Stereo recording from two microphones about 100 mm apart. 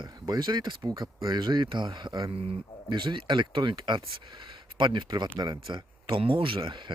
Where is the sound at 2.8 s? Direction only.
50° right (ahead or behind).